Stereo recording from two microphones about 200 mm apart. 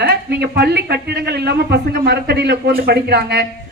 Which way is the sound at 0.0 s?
55° right (ahead or behind).